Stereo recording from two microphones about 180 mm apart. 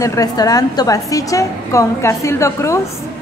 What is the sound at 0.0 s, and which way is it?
A woman's voice, 20° left (ahead or behind).